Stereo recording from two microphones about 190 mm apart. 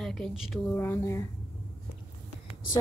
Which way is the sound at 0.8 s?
15° left (ahead or behind).